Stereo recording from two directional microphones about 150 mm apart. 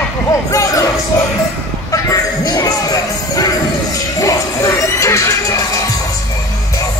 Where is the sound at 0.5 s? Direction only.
20° left (ahead or behind).